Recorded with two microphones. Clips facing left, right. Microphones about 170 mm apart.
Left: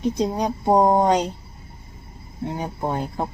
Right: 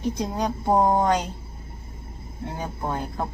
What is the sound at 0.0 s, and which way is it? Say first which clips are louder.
Speech: left 4 dB; 20° left (ahead or behind).